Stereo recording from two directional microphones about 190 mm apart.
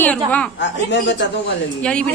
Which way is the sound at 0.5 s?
70° left (ahead or behind).